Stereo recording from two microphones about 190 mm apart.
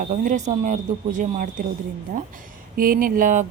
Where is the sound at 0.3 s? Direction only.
40° right (ahead or behind).